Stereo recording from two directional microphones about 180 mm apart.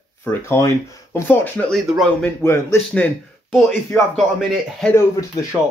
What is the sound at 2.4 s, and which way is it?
Speech, 15° left (ahead or behind).